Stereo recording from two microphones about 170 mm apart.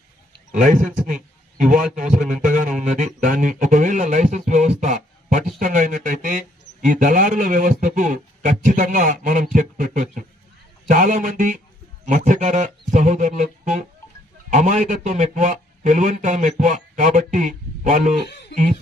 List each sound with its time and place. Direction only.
0.5 s a man's voice: 50° right (ahead or behind)
1.0 s a sound: 50° right (ahead or behind)
2.3 s a man's voice: 50° right (ahead or behind)